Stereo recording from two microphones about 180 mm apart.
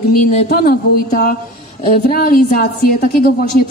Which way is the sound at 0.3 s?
50° left (ahead or behind).